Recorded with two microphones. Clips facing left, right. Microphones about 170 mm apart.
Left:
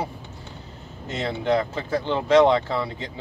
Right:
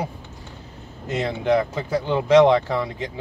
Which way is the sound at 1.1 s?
15° right (ahead or behind).